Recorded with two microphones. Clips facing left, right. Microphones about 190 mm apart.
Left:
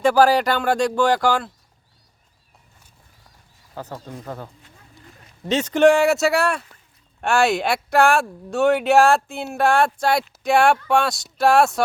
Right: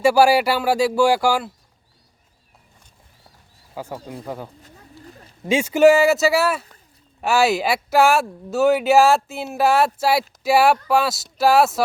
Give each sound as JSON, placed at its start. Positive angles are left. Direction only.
{"t": 0.0, "sound": "speech", "side_deg": -10}
{"t": 3.8, "sound": "speech", "side_deg": -10}
{"t": 4.6, "sound": "a sound", "side_deg": -35}
{"t": 5.5, "sound": "speech", "side_deg": -10}